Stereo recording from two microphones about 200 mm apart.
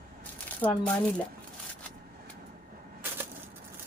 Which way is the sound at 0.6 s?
10° left (ahead or behind).